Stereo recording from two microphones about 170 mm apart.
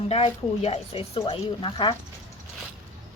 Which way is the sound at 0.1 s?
35° left (ahead or behind).